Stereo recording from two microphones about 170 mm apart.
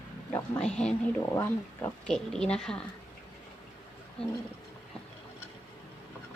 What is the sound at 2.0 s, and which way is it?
Speech, 5° left (ahead or behind).